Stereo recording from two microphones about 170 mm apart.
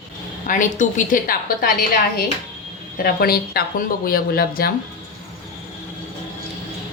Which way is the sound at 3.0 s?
65° left (ahead or behind).